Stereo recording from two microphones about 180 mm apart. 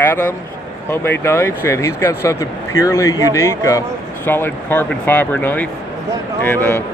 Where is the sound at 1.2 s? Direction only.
15° left (ahead or behind).